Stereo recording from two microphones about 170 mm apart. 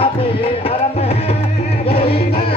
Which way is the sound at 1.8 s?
35° left (ahead or behind).